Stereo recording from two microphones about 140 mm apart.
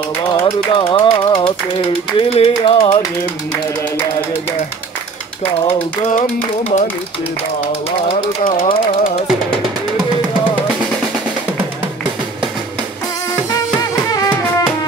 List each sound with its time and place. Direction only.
0.3 s speech: 35° left (ahead or behind)
6.0 s a sound: 55° left (ahead or behind)
8.5 s speech: 40° left (ahead or behind)
13.7 s music: 25° left (ahead or behind)